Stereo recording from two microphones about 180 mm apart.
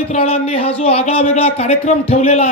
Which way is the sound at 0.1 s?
35° left (ahead or behind).